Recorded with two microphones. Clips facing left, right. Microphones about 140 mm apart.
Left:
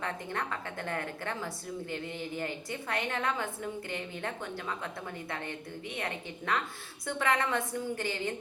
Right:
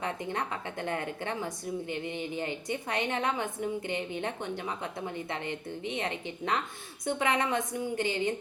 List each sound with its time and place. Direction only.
0.0 s a woman's voice: 20° right (ahead or behind)